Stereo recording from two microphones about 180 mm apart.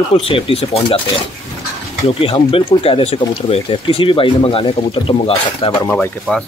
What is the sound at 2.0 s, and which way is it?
Speech, 30° left (ahead or behind).